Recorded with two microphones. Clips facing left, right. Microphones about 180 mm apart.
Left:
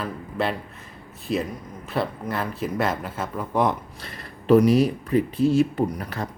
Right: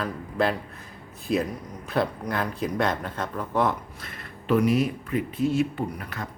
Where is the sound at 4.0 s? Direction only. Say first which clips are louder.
Left 2 dB; 35° left (ahead or behind).